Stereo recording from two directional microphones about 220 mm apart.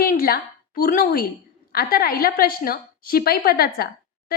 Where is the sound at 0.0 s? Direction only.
40° left (ahead or behind).